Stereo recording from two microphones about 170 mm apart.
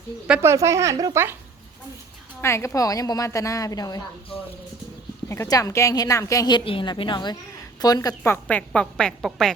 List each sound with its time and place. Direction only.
0.3 s speech: 10° right (ahead or behind)
2.4 s a woman's voice: 15° left (ahead or behind)